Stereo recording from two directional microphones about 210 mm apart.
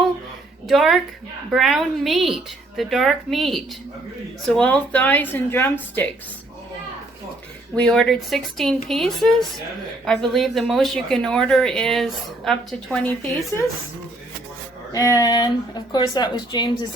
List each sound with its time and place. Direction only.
0.7 s a woman's voice: centre (ahead or behind)
7.8 s a woman's voice: 5° left (ahead or behind)
14.9 s speech: 15° left (ahead or behind)